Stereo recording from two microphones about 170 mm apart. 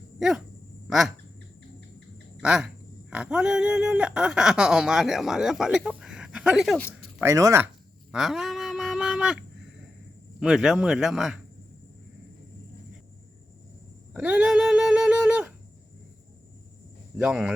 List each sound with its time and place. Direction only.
0.2 s dog: centre (ahead or behind)
0.9 s a sound: centre (ahead or behind)
2.4 s speech: 5° right (ahead or behind)
7.2 s speech: 15° right (ahead or behind)
8.1 s a sound: centre (ahead or behind)
10.4 s speech: 5° right (ahead or behind)
14.1 s speech: 5° right (ahead or behind)
17.2 s speech: 5° right (ahead or behind)